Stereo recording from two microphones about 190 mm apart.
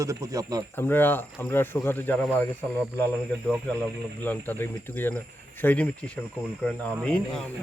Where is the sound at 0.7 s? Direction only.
10° left (ahead or behind).